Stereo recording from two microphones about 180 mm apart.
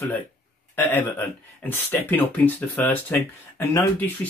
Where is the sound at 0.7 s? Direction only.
10° left (ahead or behind).